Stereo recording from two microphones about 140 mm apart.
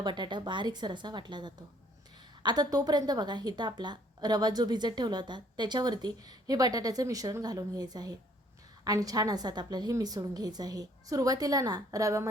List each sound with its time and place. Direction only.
0.0 s a woman's voice: 35° right (ahead or behind)